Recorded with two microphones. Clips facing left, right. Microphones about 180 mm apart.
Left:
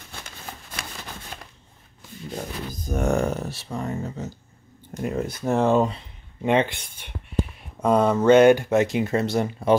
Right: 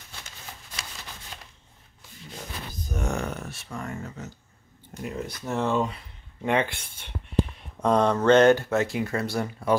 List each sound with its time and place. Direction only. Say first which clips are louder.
0.7 s shuffling cards: left 4 dB; 55° left (ahead or behind)
2.9 s speech: left 8 dB; 55° left (ahead or behind)
3.2 s a sound: left 7 dB; 40° left (ahead or behind)
3.8 s speech: left 7 dB; 30° left (ahead or behind)
4.9 s speech: left 6 dB; 50° left (ahead or behind)
5.9 s speech: left 5 dB; 25° left (ahead or behind)